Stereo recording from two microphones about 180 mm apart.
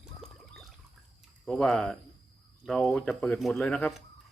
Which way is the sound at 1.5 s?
Centre (ahead or behind).